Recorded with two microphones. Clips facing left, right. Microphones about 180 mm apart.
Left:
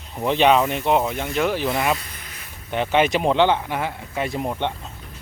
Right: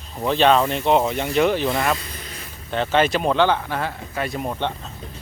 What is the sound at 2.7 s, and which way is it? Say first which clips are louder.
Speech: even; 15° left (ahead or behind).